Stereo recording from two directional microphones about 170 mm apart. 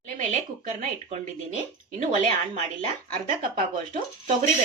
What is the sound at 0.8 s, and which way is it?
A woman's voice, 40° right (ahead or behind).